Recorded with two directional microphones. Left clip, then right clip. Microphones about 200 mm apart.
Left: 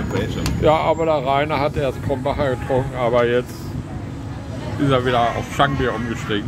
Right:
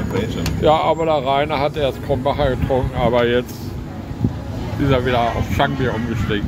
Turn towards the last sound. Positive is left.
turn(degrees=10)  # may be behind; listen again after turning